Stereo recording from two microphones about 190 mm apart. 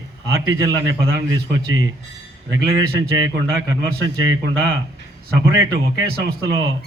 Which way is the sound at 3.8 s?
20° right (ahead or behind).